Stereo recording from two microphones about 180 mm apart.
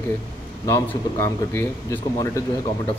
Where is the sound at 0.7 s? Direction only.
15° left (ahead or behind).